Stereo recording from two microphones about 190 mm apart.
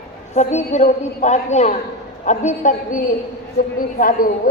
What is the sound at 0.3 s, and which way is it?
A woman's voice, 40° left (ahead or behind).